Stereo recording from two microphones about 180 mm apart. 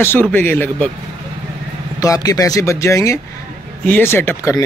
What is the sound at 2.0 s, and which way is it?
Speech, 20° left (ahead or behind).